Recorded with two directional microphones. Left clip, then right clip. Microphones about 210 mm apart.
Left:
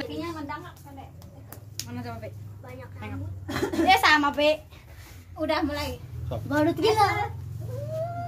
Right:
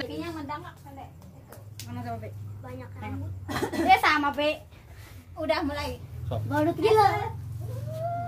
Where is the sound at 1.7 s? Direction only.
50° left (ahead or behind).